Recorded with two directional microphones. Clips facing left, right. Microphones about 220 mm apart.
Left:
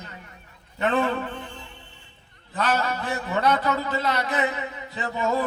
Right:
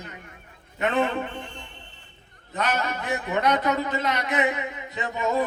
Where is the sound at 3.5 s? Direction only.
15° right (ahead or behind).